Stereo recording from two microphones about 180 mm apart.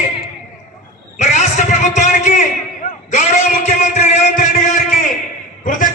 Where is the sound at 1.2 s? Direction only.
45° left (ahead or behind).